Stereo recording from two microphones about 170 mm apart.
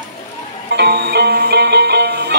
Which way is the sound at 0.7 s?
70° right (ahead or behind).